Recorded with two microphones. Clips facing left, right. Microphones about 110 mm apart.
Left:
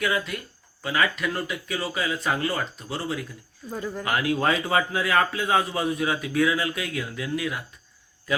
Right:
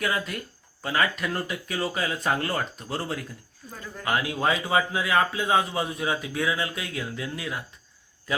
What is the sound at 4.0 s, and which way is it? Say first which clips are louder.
Speech: left 1 dB; 25° right (ahead or behind).